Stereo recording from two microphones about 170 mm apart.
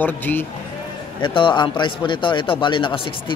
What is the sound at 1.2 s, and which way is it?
A man's voice, 30° left (ahead or behind).